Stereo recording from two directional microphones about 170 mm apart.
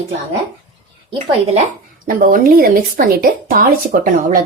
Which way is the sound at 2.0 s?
55° right (ahead or behind).